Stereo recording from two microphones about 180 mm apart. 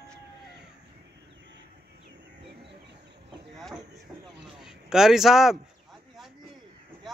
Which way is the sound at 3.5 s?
Centre (ahead or behind).